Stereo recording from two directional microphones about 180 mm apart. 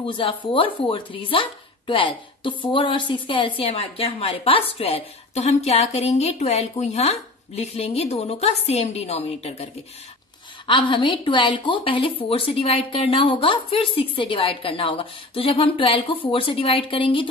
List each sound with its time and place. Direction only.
0.0 s a woman's voice: 30° left (ahead or behind)
10.7 s a woman's voice: 25° left (ahead or behind)